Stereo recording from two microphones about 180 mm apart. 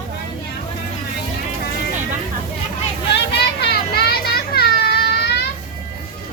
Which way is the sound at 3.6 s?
60° left (ahead or behind).